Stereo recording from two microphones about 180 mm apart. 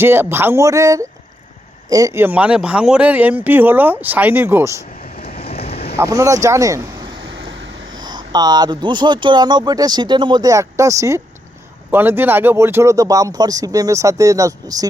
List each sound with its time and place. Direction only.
0.0 s speech: 10° right (ahead or behind)
5.0 s vehicle: 35° left (ahead or behind)
5.4 s a sound: 35° left (ahead or behind)
6.0 s speech: 15° right (ahead or behind)